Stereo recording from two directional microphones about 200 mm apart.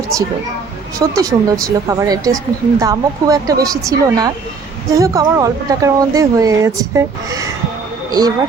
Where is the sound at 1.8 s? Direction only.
15° right (ahead or behind).